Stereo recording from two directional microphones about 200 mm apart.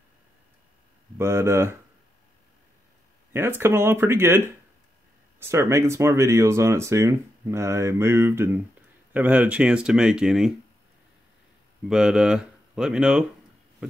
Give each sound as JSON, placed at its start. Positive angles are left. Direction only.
{"t": 1.1, "sound": "speech", "side_deg": -15}
{"t": 3.3, "sound": "speech", "side_deg": -10}
{"t": 5.4, "sound": "speech", "side_deg": -15}
{"t": 11.9, "sound": "speech", "side_deg": -5}